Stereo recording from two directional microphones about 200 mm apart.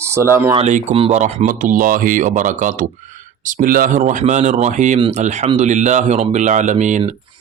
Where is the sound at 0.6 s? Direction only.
35° right (ahead or behind).